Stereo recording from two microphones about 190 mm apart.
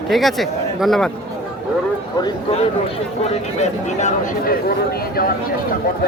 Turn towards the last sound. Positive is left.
turn(degrees=35)  # may be behind; listen again after turning